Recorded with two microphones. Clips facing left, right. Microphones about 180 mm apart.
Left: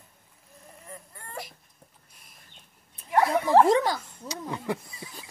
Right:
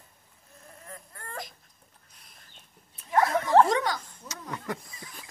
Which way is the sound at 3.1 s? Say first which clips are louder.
Left 1 dB; 15° left (ahead or behind).